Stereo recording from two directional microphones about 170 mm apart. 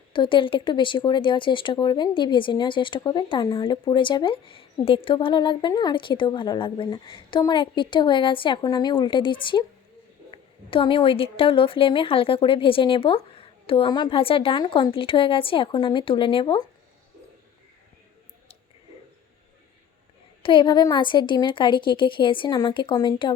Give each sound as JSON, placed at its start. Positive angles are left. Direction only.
{"t": 0.1, "sound": "a woman's voice", "side_deg": 30}
{"t": 20.4, "sound": "speech", "side_deg": 30}